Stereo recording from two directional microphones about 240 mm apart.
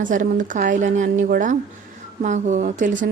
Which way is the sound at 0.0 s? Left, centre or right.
Right.